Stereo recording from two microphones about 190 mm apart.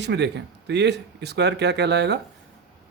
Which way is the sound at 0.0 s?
65° right (ahead or behind).